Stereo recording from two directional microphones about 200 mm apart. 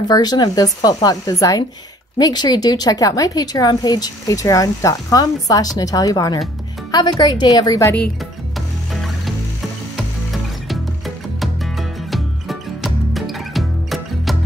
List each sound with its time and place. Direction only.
0.1 s a woman's voice: 20° left (ahead or behind)
8.5 s music: centre (ahead or behind)
11.3 s music: centre (ahead or behind)